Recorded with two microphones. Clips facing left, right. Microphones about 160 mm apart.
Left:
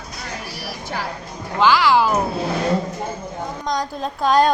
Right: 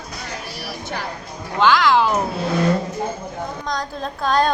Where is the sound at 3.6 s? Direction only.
15° left (ahead or behind).